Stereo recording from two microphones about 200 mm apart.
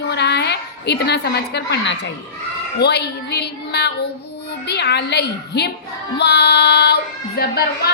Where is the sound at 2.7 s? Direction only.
55° left (ahead or behind).